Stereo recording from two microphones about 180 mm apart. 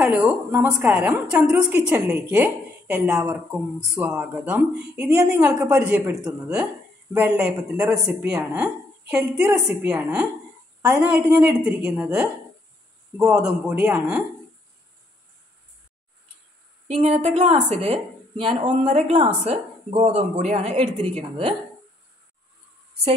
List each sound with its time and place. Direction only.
0.0 s a woman's voice: 10° right (ahead or behind)
16.8 s a woman's voice: 35° right (ahead or behind)